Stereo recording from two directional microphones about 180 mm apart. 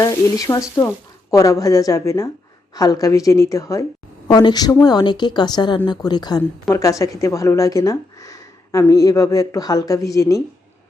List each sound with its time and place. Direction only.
0.0 s a woman's voice: 20° left (ahead or behind)